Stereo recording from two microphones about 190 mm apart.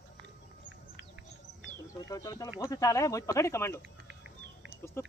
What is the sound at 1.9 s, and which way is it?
Speech, 20° left (ahead or behind).